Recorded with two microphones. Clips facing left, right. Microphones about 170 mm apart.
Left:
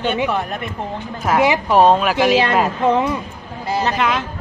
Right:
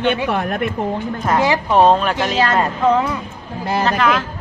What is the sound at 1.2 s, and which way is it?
Speech, 10° left (ahead or behind).